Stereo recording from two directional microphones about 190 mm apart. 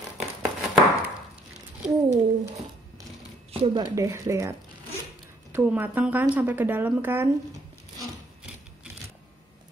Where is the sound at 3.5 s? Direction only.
30° right (ahead or behind).